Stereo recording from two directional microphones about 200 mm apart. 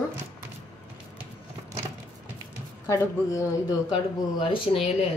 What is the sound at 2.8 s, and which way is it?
Speech, 15° left (ahead or behind).